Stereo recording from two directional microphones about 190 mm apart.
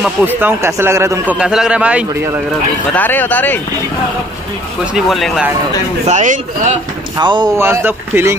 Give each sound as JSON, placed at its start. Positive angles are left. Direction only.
{"t": 0.0, "sound": "a man's voice", "side_deg": -10}
{"t": 2.9, "sound": "speech", "side_deg": 10}
{"t": 4.9, "sound": "speech", "side_deg": 0}
{"t": 6.0, "sound": "speech", "side_deg": -40}
{"t": 7.2, "sound": "a man's voice", "side_deg": -25}